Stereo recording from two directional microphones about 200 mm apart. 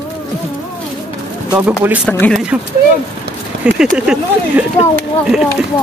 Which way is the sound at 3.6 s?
5° right (ahead or behind).